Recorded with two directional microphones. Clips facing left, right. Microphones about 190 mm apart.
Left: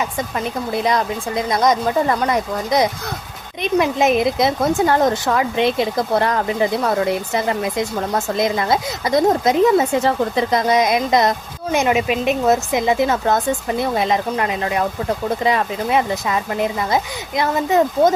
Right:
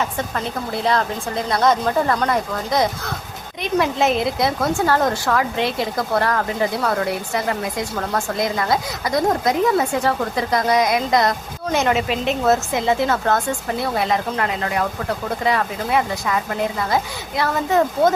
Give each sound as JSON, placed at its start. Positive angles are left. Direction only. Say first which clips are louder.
{"t": 0.0, "sound": "a woman's voice", "louder": "left 1 dB", "side_deg": 15}